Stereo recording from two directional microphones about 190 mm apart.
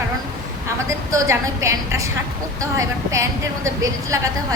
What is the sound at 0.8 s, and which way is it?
A woman's voice, 15° right (ahead or behind).